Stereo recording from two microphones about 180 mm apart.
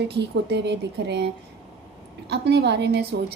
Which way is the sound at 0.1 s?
70° right (ahead or behind).